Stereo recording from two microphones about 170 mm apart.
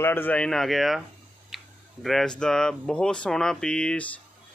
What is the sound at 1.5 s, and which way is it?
Tick-tock, centre (ahead or behind).